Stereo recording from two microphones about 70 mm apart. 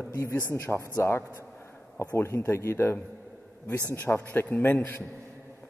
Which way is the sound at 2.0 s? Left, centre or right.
Left.